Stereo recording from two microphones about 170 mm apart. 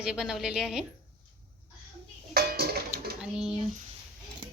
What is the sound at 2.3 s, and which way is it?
Dishes, 65° right (ahead or behind).